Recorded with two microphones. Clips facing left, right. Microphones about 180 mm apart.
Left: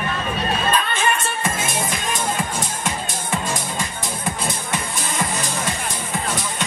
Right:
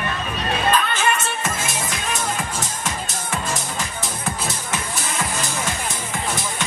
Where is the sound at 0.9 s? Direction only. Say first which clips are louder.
Even; 5° right (ahead or behind).